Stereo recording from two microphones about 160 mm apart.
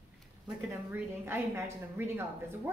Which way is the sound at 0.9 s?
15° right (ahead or behind).